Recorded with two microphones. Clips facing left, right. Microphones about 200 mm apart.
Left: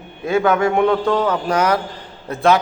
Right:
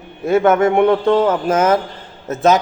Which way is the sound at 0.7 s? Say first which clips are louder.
Right 3 dB; 20° right (ahead or behind).